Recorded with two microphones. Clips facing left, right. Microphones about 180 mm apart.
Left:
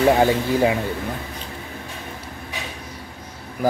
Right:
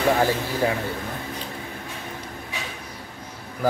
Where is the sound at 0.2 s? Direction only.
15° left (ahead or behind).